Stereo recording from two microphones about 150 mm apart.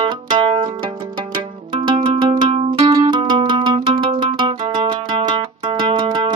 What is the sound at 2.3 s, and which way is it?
Music, 30° right (ahead or behind).